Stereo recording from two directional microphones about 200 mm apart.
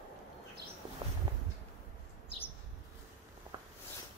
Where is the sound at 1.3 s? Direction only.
20° right (ahead or behind).